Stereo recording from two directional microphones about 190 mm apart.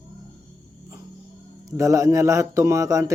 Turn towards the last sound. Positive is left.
turn(degrees=-15)  # may be behind; listen again after turning